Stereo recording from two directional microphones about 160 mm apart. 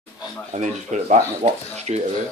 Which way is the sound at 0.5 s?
45° right (ahead or behind).